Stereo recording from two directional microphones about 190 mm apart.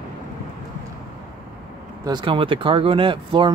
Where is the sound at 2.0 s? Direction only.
25° right (ahead or behind).